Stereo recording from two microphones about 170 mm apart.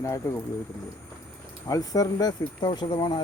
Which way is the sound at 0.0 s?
15° left (ahead or behind).